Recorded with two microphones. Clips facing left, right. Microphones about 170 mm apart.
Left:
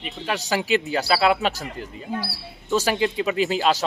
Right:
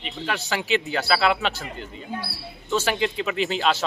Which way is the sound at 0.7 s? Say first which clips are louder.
Left 1 dB; 40° left (ahead or behind).